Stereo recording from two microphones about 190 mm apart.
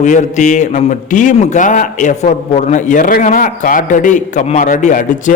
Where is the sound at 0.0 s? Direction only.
40° left (ahead or behind).